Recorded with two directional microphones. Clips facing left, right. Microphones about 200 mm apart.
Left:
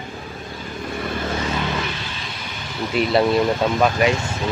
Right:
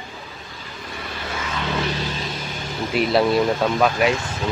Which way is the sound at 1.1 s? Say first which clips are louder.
Left 5 dB; 40° left (ahead or behind).